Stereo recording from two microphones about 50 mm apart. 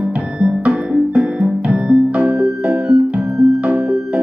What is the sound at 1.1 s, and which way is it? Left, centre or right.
Music, right.